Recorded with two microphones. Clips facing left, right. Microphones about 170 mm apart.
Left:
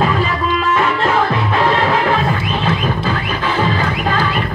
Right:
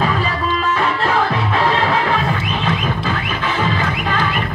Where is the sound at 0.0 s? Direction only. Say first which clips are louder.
Left 3 dB; 40° left (ahead or behind).